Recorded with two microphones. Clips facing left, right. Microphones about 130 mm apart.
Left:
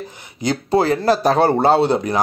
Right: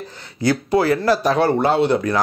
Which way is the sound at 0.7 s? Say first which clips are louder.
Left 2 dB; 25° left (ahead or behind).